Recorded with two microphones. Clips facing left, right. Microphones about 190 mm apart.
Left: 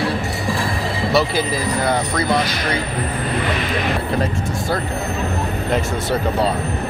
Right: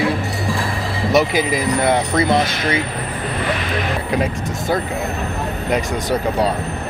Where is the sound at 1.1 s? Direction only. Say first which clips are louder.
Right 3 dB; 20° right (ahead or behind).